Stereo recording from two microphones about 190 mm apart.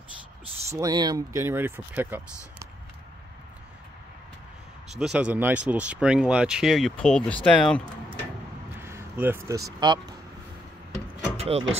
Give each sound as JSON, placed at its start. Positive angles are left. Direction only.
{"t": 0.7, "sound": "speech", "side_deg": -20}
{"t": 4.9, "sound": "speech", "side_deg": -5}
{"t": 8.8, "sound": "speech", "side_deg": -10}
{"t": 11.3, "sound": "vehicle", "side_deg": -30}